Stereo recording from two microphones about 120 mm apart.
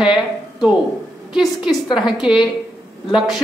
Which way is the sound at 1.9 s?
5° right (ahead or behind).